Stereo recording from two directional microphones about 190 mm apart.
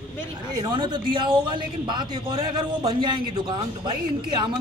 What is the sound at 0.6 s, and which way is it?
A man's voice, 20° right (ahead or behind).